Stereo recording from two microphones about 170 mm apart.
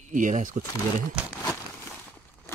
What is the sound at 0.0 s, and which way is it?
Speech, 50° right (ahead or behind).